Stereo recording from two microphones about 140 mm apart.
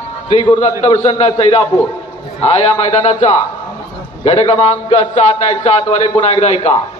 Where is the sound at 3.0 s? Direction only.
55° left (ahead or behind).